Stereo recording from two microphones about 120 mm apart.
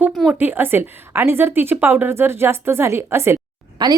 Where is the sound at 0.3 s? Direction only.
15° right (ahead or behind).